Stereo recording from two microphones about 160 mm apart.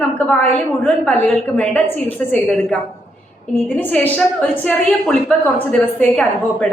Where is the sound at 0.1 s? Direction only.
10° left (ahead or behind).